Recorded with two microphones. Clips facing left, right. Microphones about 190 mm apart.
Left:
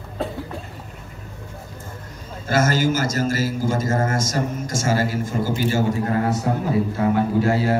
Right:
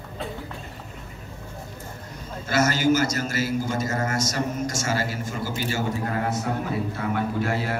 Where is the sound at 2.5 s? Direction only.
45° left (ahead or behind).